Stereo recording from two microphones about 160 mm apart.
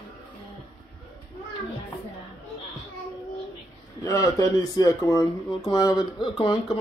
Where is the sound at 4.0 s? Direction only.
20° left (ahead or behind).